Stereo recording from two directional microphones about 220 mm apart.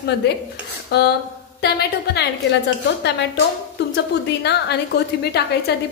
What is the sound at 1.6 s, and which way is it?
Speech, 45° left (ahead or behind).